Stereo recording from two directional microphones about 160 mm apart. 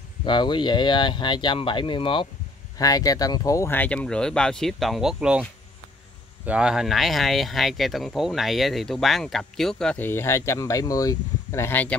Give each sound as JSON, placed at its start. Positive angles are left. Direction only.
{"t": 0.2, "sound": "speech", "side_deg": 30}
{"t": 6.4, "sound": "speech", "side_deg": -5}